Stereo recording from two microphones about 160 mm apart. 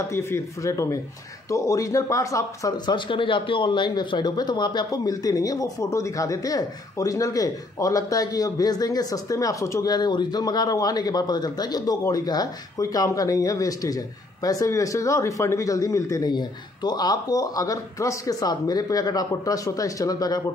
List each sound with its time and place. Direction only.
0.1 s speech: 15° left (ahead or behind)